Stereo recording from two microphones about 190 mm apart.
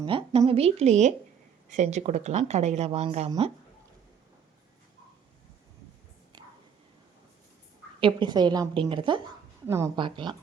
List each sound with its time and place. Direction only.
0.0 s speech: 25° right (ahead or behind)
6.3 s whispering: 20° right (ahead or behind)
8.0 s a woman's voice: 25° right (ahead or behind)
9.6 s a woman's voice: 15° right (ahead or behind)